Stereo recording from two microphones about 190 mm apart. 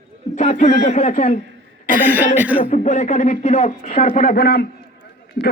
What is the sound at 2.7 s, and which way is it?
A man's voice, 40° left (ahead or behind).